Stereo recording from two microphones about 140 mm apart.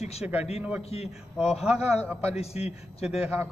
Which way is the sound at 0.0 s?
50° left (ahead or behind).